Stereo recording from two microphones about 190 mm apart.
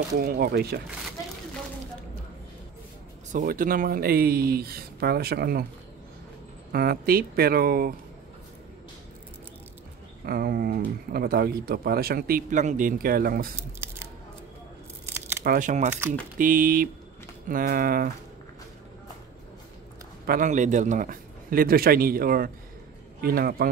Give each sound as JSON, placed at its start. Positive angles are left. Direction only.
{"t": 0.2, "sound": "speech", "side_deg": -50}
{"t": 3.3, "sound": "speech", "side_deg": -45}
{"t": 6.7, "sound": "speech", "side_deg": -55}
{"t": 10.2, "sound": "speech", "side_deg": -50}
{"t": 13.6, "sound": "camera", "side_deg": -15}
{"t": 15.0, "sound": "a sound", "side_deg": -10}
{"t": 15.4, "sound": "speech", "side_deg": -45}
{"t": 20.2, "sound": "speech", "side_deg": -45}